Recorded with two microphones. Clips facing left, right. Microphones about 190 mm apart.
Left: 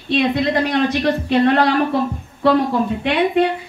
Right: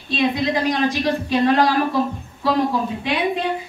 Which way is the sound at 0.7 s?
60° left (ahead or behind).